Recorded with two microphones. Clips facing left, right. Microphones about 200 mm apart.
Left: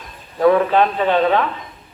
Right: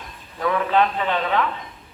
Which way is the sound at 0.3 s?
40° left (ahead or behind).